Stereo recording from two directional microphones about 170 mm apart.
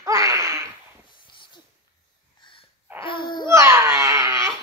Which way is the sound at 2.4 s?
30° left (ahead or behind).